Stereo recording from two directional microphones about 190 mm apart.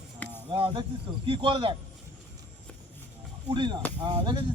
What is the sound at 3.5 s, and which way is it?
Speech, 25° right (ahead or behind).